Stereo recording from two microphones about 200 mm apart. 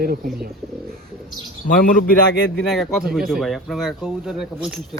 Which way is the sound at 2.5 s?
5° left (ahead or behind).